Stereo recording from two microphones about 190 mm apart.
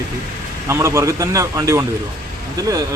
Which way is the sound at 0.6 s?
15° right (ahead or behind).